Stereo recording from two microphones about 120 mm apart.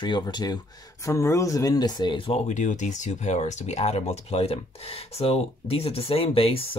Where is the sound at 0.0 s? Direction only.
35° left (ahead or behind).